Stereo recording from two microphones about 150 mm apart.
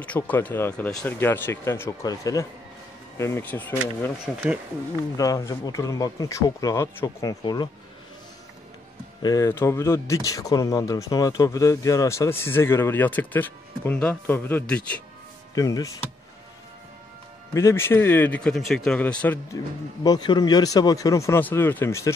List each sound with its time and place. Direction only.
0.0 s speech: 10° left (ahead or behind)
4.3 s speech: centre (ahead or behind)
5.1 s speech: 25° left (ahead or behind)
7.4 s speech: 30° left (ahead or behind)
9.2 s speech: 25° left (ahead or behind)
15.5 s speech: 25° left (ahead or behind)
17.6 s speech: 15° left (ahead or behind)
20.0 s speech: 30° left (ahead or behind)